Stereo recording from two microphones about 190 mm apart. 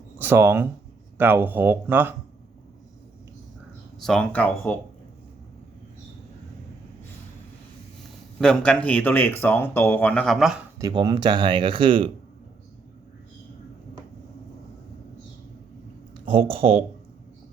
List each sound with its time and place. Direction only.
0.2 s speech: 10° right (ahead or behind)
4.0 s speech: 5° left (ahead or behind)
8.4 s speech: 5° left (ahead or behind)
10.8 s speech: 20° right (ahead or behind)
16.3 s speech: 30° right (ahead or behind)